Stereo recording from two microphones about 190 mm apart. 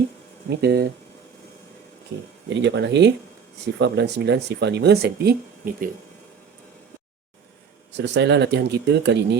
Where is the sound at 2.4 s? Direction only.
70° right (ahead or behind); by 5.8 s 50° right (ahead or behind).